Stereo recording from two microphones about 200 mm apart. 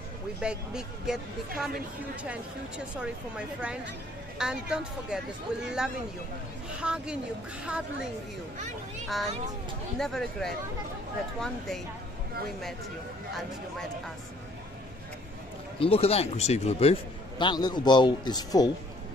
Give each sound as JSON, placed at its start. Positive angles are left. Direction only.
{"t": 0.4, "sound": "speech", "side_deg": -5}
{"t": 3.0, "sound": "speech", "side_deg": -5}
{"t": 6.8, "sound": "speech", "side_deg": -5}
{"t": 9.0, "sound": "speech", "side_deg": 0}
{"t": 15.8, "sound": "a man's voice", "side_deg": 30}